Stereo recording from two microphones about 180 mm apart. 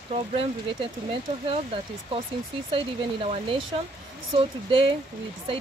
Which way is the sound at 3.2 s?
35° right (ahead or behind).